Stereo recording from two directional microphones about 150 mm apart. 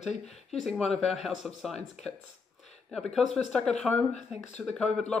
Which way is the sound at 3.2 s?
Centre (ahead or behind).